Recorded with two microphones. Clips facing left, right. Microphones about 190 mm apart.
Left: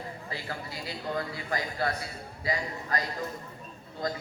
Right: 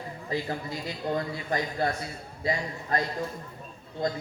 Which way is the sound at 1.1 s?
20° right (ahead or behind).